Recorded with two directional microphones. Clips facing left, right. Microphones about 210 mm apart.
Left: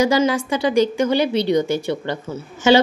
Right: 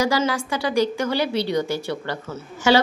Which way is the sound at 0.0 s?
20° left (ahead or behind).